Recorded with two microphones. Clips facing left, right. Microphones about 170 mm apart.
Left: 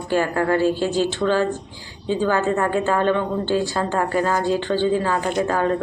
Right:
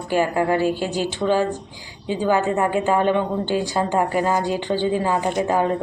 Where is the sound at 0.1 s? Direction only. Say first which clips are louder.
Even; 15° right (ahead or behind).